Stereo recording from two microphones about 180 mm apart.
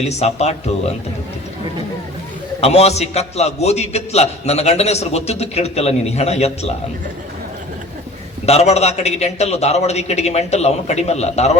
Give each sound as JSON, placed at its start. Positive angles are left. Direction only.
{"t": 0.0, "sound": "a man's voice", "side_deg": 35}
{"t": 2.6, "sound": "a man's voice", "side_deg": 35}
{"t": 8.4, "sound": "a man's voice", "side_deg": 35}